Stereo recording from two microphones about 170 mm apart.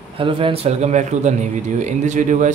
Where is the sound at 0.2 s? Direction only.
30° right (ahead or behind).